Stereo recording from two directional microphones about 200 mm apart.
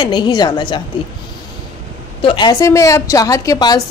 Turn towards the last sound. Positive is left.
turn(degrees=15)  # may be behind; listen again after turning